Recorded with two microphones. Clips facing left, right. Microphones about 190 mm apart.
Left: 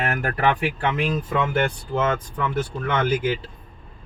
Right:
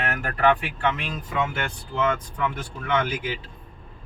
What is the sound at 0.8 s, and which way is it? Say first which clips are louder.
Speech: left 4 dB; 55° left (ahead or behind).